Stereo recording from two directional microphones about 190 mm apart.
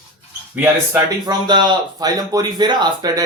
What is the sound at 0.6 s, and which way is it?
Speech, 15° right (ahead or behind).